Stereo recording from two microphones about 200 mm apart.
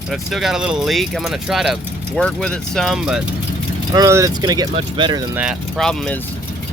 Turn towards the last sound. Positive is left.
turn(degrees=5)  # may be behind; listen again after turning